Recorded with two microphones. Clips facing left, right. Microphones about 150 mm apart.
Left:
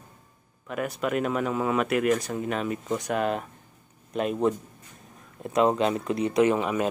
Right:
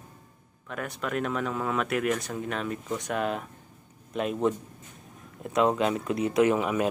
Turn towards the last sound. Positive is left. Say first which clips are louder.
# left 1 dB
turn(degrees=-5)  # may be behind; listen again after turning